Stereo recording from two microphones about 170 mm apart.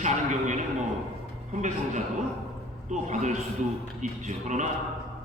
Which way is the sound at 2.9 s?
45° right (ahead or behind).